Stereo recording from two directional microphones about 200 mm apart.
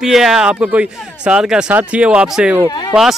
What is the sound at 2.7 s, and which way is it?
Speech, 20° left (ahead or behind).